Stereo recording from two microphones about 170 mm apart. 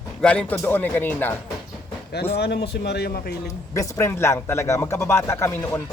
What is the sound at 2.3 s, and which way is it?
Speech, 75° left (ahead or behind).